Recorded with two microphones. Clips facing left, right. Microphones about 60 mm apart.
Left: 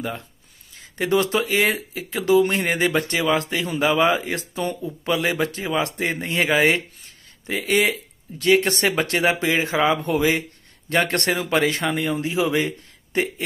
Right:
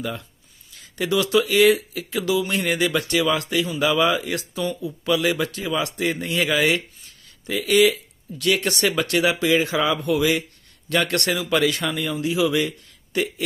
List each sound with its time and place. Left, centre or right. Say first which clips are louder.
0.0 s a man's voice: even; left